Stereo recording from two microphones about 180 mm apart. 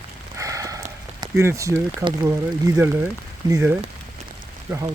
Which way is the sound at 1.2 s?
15° right (ahead or behind).